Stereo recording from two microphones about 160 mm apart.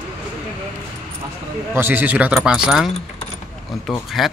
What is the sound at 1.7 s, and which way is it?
A man's voice, 15° right (ahead or behind).